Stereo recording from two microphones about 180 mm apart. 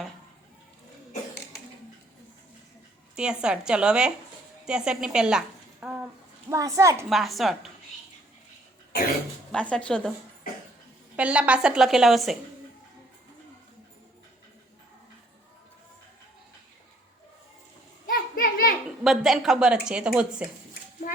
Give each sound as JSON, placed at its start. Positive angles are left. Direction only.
{"t": 3.2, "sound": "a woman's voice", "side_deg": -5}
{"t": 5.8, "sound": "a sound", "side_deg": -5}
{"t": 6.5, "sound": "a woman's voice", "side_deg": -20}
{"t": 7.1, "sound": "a woman's voice", "side_deg": 0}
{"t": 9.5, "sound": "a woman's voice", "side_deg": 5}
{"t": 11.2, "sound": "a woman's voice", "side_deg": -5}
{"t": 18.0, "sound": "children playing", "side_deg": 50}
{"t": 19.0, "sound": "a woman's voice", "side_deg": 0}
{"t": 21.0, "sound": "speech", "side_deg": 45}